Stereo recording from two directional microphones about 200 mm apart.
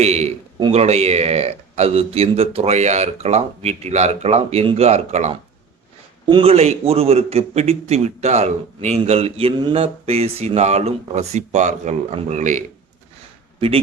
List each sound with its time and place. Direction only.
0.0 s a man's voice: 35° right (ahead or behind)